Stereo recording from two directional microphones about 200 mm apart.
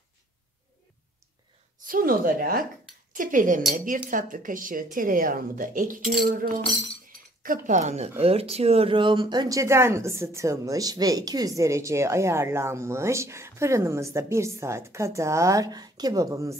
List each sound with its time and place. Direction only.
1.8 s speech: 45° right (ahead or behind)
7.1 s a sound: 45° right (ahead or behind)
8.2 s speech: 30° right (ahead or behind)